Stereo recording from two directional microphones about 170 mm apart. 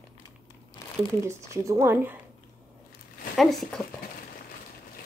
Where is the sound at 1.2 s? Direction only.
15° right (ahead or behind).